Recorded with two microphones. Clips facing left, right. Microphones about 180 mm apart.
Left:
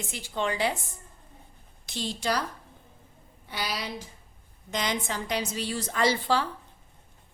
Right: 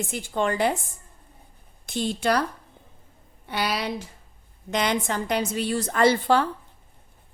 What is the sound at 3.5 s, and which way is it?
A woman's voice, 65° right (ahead or behind).